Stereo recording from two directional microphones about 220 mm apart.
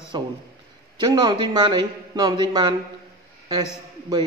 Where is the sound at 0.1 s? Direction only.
20° right (ahead or behind).